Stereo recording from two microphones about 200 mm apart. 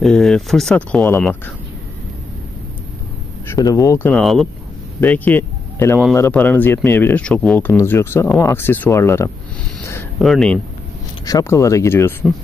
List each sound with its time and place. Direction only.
0.0 s speech: centre (ahead or behind)
3.4 s speech: 15° left (ahead or behind)
4.1 s speech: centre (ahead or behind)
10.1 s speech: centre (ahead or behind)
11.2 s speech: 15° left (ahead or behind)